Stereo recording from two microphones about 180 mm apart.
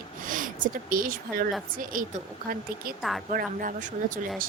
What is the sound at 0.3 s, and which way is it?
Speech, 50° right (ahead or behind).